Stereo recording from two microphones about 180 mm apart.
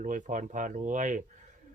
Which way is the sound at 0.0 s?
45° right (ahead or behind).